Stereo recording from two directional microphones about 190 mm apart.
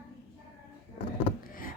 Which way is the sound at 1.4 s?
45° left (ahead or behind).